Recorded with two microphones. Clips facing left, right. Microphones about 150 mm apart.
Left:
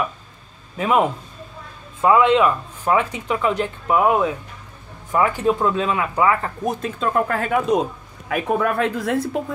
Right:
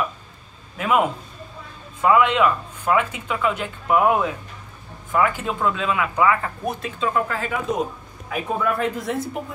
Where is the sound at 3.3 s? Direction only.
35° left (ahead or behind).